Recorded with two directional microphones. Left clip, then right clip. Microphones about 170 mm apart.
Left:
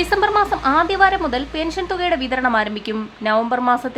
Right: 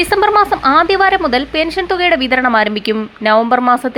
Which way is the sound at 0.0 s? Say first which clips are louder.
Right 5 dB; 20° right (ahead or behind).